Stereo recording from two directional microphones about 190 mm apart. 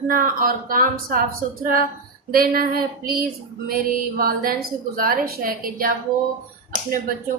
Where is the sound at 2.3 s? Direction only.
50° right (ahead or behind).